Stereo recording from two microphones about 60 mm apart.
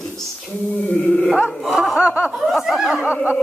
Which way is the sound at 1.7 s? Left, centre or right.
Centre.